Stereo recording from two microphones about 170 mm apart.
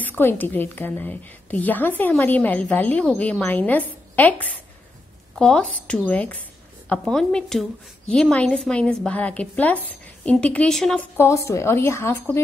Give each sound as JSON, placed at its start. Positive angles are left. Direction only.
{"t": 0.0, "sound": "a woman's voice", "side_deg": 10}
{"t": 11.1, "sound": "a woman's voice", "side_deg": 15}